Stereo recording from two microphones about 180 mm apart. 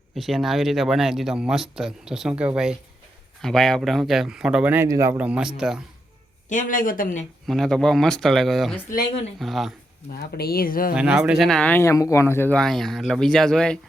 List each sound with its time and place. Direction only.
0.2 s speech: centre (ahead or behind)
6.5 s speech: 45° left (ahead or behind)
7.4 s speech: centre (ahead or behind)
10.1 s speech: 60° left (ahead or behind)
10.9 s speech: 5° right (ahead or behind)